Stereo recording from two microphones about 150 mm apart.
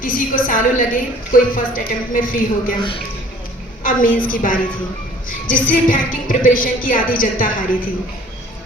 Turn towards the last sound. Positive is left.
turn(degrees=65)  # may be behind; listen again after turning